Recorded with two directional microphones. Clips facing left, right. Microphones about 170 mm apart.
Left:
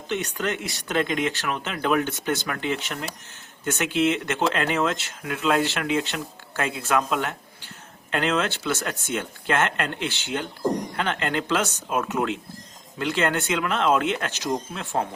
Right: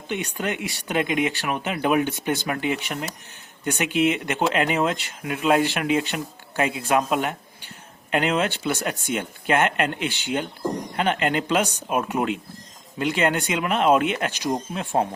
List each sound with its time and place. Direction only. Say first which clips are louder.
0.1 s speech: even; 15° right (ahead or behind)